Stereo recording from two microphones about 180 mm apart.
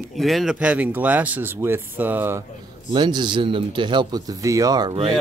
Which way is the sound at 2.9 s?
25° right (ahead or behind).